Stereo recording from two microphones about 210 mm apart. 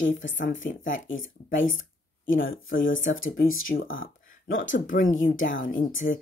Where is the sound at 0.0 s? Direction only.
60° left (ahead or behind).